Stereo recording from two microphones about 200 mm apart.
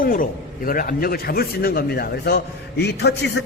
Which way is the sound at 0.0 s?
45° left (ahead or behind).